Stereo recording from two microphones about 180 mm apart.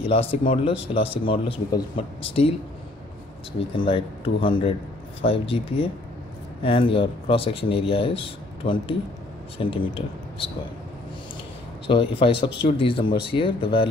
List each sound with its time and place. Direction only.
0.0 s a man's voice: 30° left (ahead or behind)
3.7 s speech: 30° left (ahead or behind)
11.9 s speech: 30° left (ahead or behind)